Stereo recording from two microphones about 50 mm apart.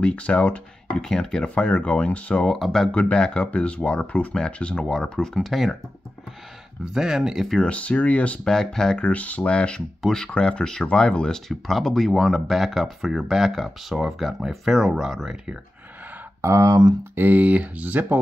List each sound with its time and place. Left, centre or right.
0.0 s speech: left
0.9 s speech: centre
1.5 s speech: left
2.4 s speech: centre
2.9 s speech: left
4.8 s speech: centre
6.8 s speech: centre
7.6 s speech: left
8.5 s speech: centre
9.0 s speech: left; by 15.3 s centre
16.3 s a sound: right
17.1 s speech: right
17.4 s speech: right